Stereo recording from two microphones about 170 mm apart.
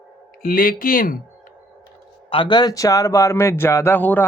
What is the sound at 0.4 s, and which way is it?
Speech, 55° left (ahead or behind).